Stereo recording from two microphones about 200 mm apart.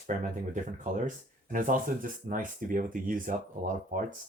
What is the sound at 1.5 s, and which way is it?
Speech, 45° right (ahead or behind).